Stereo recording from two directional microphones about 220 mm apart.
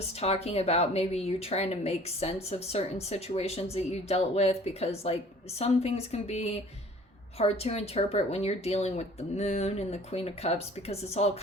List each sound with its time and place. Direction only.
0.1 s speech: 30° left (ahead or behind)